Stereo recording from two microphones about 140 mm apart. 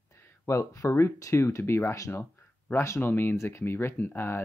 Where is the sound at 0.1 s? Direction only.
20° left (ahead or behind).